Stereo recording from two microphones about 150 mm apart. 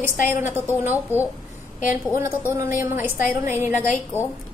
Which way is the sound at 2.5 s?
15° right (ahead or behind).